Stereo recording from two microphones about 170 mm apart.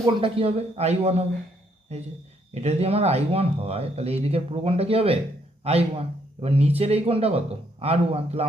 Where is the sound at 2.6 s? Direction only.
35° right (ahead or behind).